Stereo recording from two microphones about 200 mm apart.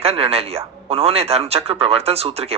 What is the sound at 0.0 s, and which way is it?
A man's voice, 30° right (ahead or behind).